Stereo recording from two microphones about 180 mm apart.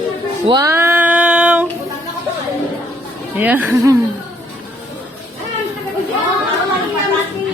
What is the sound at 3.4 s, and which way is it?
Speech, 10° right (ahead or behind).